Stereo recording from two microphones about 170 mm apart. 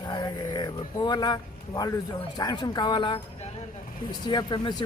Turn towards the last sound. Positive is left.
turn(degrees=25)  # may be behind; listen again after turning